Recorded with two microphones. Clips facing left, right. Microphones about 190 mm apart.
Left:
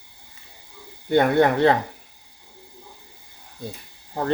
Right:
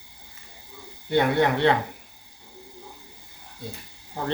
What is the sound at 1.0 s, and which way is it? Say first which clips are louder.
Speech: left 4 dB; 50° left (ahead or behind).